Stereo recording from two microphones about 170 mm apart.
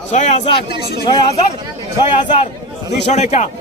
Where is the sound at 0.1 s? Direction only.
40° left (ahead or behind).